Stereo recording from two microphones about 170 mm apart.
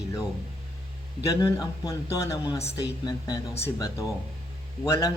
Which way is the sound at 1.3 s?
20° left (ahead or behind).